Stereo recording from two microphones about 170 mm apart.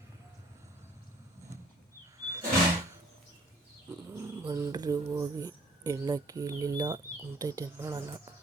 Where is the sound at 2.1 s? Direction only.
20° right (ahead or behind).